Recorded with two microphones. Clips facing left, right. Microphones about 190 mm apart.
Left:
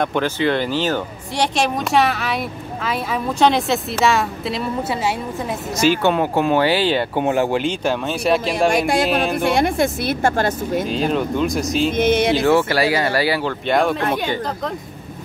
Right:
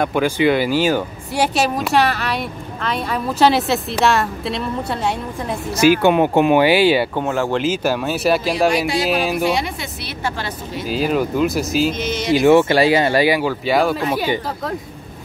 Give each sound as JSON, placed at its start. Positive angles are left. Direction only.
{"t": 0.0, "sound": "speech", "side_deg": -10}
{"t": 5.8, "sound": "speech", "side_deg": -10}
{"t": 7.2, "sound": "speech", "side_deg": 15}
{"t": 7.5, "sound": "speech", "side_deg": -5}
{"t": 9.5, "sound": "speech", "side_deg": 50}
{"t": 10.9, "sound": "speech", "side_deg": -5}
{"t": 11.9, "sound": "speech", "side_deg": 55}
{"t": 12.4, "sound": "speech", "side_deg": -20}